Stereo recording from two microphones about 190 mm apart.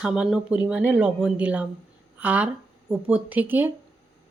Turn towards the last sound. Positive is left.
turn(degrees=-10)  # may be behind; listen again after turning